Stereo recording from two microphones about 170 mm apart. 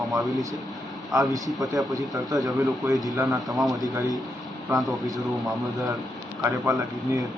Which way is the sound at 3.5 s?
Centre (ahead or behind).